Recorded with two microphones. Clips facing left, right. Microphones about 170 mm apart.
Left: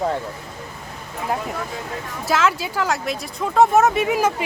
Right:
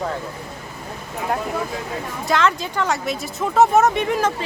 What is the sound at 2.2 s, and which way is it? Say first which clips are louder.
Speech: even; 5° left (ahead or behind).